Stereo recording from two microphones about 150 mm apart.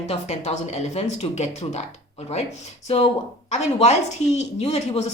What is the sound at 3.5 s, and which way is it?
A woman's voice, 50° left (ahead or behind).